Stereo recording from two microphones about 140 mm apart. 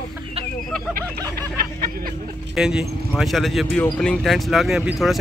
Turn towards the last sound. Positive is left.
turn(degrees=0)  # may be behind; listen again after turning